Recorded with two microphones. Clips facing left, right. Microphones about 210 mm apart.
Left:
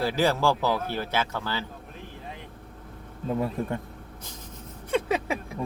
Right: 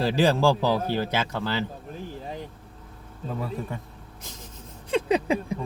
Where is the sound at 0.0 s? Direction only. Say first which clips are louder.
Right 3 dB; 15° right (ahead or behind).